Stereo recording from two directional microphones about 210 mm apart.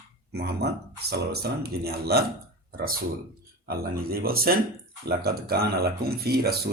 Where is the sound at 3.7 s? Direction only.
45° right (ahead or behind).